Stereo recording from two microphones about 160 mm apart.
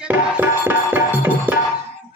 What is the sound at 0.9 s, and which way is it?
Music, 15° right (ahead or behind).